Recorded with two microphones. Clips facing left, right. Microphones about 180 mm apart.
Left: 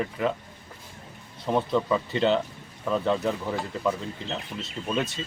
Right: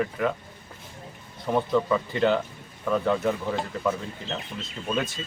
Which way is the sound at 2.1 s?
30° left (ahead or behind).